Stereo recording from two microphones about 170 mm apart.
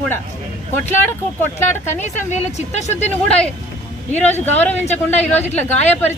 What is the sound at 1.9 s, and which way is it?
A man's voice, 40° left (ahead or behind).